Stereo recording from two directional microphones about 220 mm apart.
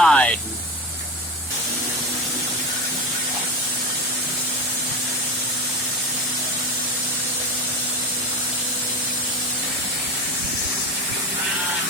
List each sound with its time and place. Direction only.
0.0 s spray: 5° left (ahead or behind)